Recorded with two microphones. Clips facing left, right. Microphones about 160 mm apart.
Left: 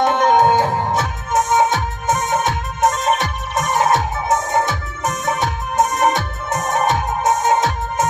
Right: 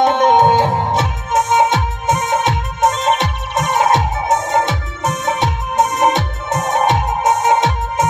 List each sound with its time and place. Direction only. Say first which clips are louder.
0.0 s music: right 2 dB; 20° right (ahead or behind)